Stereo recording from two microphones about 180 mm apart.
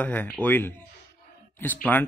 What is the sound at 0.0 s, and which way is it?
A man's voice, 10° left (ahead or behind).